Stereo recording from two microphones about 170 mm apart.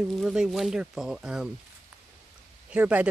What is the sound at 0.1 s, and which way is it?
A man's voice, centre (ahead or behind).